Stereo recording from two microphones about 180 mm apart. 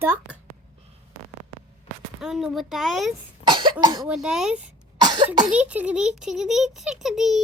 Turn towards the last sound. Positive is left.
turn(degrees=0)  # may be behind; listen again after turning